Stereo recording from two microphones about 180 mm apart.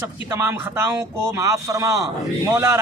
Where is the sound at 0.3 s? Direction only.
15° right (ahead or behind).